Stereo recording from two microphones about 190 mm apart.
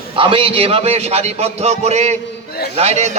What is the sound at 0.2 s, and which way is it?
A man's voice, 30° right (ahead or behind).